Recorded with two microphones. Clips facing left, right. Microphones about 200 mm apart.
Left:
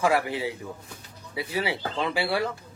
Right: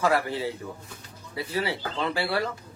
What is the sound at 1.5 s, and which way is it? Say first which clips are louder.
Speech: left 1 dB; 15° left (ahead or behind).